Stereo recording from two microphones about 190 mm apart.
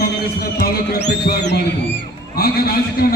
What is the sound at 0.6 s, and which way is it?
Speech, 55° left (ahead or behind).